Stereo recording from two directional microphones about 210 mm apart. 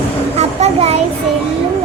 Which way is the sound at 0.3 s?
30° right (ahead or behind).